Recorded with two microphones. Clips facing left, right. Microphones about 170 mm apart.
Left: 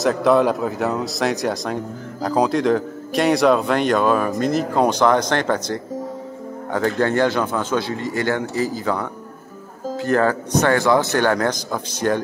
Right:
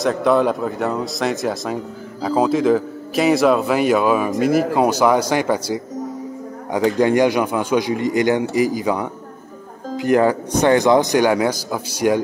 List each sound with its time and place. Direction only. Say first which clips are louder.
0.0 s a man's voice: even; centre (ahead or behind)